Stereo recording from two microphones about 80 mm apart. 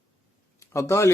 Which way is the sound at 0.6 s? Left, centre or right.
Left.